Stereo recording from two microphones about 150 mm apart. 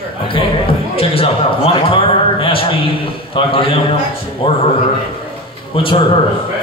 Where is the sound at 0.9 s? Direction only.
40° left (ahead or behind).